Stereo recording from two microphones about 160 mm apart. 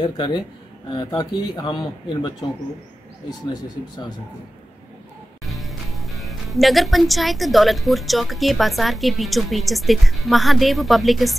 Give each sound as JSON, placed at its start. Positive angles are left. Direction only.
{"t": 0.0, "sound": "speech", "side_deg": 30}
{"t": 5.4, "sound": "speech", "side_deg": 0}